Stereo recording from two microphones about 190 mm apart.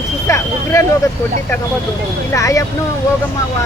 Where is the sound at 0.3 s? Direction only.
15° left (ahead or behind).